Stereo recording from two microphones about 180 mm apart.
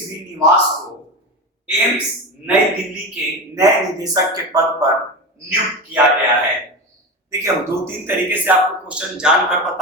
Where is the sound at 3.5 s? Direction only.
20° right (ahead or behind).